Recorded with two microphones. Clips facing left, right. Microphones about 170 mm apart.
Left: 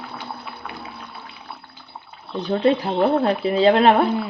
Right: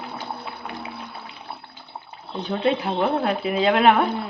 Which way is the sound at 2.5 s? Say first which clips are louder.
Left 4 dB; 35° left (ahead or behind).